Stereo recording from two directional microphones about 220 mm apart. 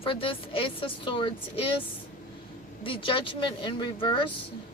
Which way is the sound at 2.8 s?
25° left (ahead or behind).